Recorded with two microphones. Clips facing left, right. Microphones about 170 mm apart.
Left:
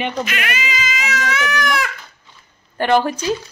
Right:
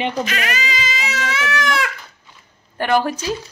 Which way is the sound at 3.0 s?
5° right (ahead or behind).